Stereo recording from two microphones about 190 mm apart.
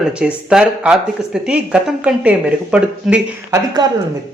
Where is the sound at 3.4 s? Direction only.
20° right (ahead or behind).